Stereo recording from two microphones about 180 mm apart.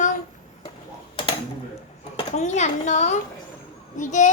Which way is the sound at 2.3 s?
40° left (ahead or behind).